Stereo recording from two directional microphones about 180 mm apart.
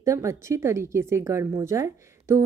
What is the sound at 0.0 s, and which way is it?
A woman's voice, 15° right (ahead or behind).